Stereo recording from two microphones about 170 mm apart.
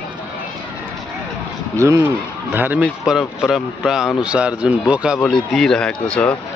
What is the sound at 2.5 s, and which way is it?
Speech, 10° right (ahead or behind).